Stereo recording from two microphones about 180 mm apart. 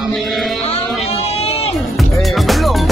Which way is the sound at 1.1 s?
35° left (ahead or behind).